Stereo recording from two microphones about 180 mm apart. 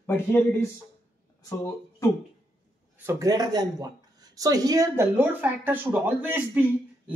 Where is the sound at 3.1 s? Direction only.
20° right (ahead or behind).